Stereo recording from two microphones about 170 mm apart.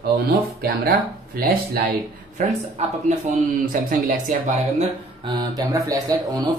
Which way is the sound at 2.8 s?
40° right (ahead or behind).